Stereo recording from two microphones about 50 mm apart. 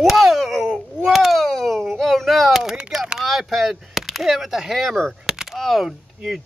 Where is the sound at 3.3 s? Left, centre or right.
Centre.